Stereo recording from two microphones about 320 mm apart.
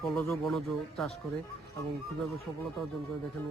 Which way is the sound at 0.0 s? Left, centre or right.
Centre.